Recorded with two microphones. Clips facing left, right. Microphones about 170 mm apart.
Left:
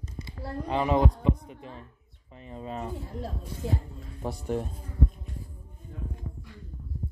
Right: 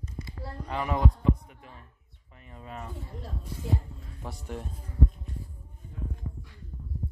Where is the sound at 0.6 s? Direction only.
20° left (ahead or behind).